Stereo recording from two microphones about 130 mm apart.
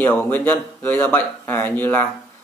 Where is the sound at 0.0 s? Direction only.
15° left (ahead or behind).